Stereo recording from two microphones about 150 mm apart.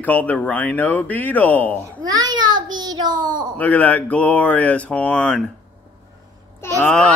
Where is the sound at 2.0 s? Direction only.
25° right (ahead or behind).